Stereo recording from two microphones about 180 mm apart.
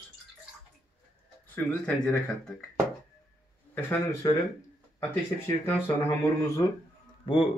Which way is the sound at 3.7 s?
15° left (ahead or behind).